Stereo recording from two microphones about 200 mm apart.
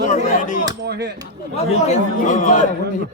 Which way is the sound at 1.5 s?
35° left (ahead or behind).